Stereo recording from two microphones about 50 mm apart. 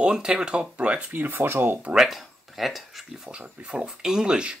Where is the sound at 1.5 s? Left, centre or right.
Right.